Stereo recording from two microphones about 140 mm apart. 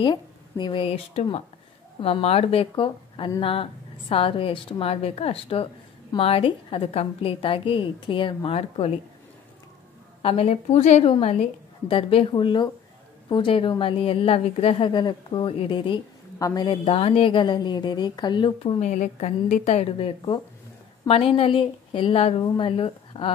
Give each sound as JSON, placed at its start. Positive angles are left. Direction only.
{"t": 0.0, "sound": "a woman's voice", "side_deg": 35}
{"t": 10.2, "sound": "a woman's voice", "side_deg": 45}
{"t": 16.3, "sound": "a woman's voice", "side_deg": 25}
{"t": 16.6, "sound": "a woman's voice", "side_deg": 35}
{"t": 18.6, "sound": "a woman's voice", "side_deg": 50}